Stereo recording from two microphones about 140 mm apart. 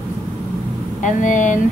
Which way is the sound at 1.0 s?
65° left (ahead or behind).